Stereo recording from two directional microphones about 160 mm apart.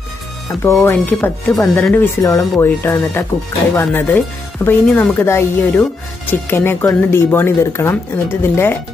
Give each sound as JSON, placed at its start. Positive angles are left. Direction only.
{"t": 0.6, "sound": "speech", "side_deg": 15}